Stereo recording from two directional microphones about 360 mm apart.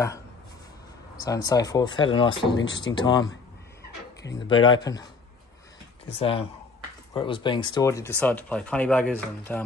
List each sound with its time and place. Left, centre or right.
1.2 s speech: centre
2.5 s speech: left
2.8 s speech: centre
4.5 s speech: centre
6.0 s speech: centre